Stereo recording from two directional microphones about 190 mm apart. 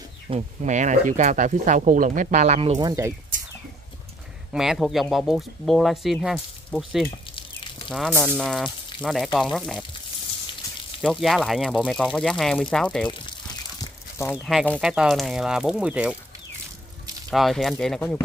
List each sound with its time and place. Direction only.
0.3 s speech: 40° right (ahead or behind)
4.5 s speech: centre (ahead or behind)
8.1 s speech: 10° right (ahead or behind)
8.4 s speech: centre (ahead or behind)
11.0 s speech: centre (ahead or behind)
13.7 s a sound: 15° left (ahead or behind)
14.3 s speech: 5° right (ahead or behind)
17.3 s speech: centre (ahead or behind)